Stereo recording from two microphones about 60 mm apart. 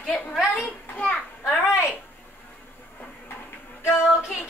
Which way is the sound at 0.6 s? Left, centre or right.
Left.